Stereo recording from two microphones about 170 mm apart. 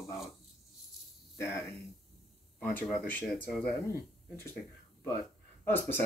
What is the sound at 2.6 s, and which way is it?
Speech, 10° left (ahead or behind).